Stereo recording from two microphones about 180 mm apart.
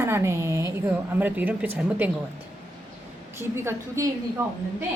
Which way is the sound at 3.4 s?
15° right (ahead or behind).